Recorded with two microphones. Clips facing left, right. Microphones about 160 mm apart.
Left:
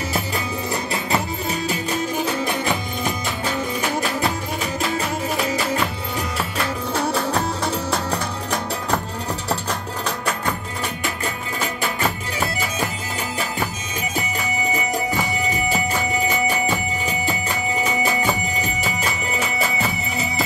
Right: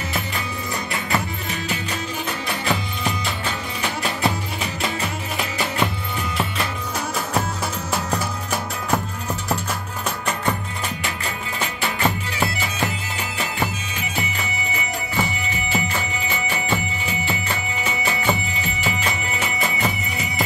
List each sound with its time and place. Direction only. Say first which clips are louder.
0.9 s music: even; 35° left (ahead or behind)
7.3 s music: left 2 dB; 10° right (ahead or behind)
11.6 s music: even; 5° left (ahead or behind)
15.4 s music: left 3 dB; 40° left (ahead or behind)